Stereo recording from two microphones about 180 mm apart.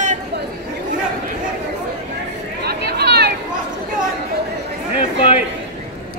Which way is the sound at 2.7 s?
65° right (ahead or behind).